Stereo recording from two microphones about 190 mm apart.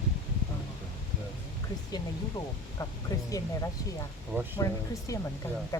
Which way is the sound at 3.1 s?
20° left (ahead or behind).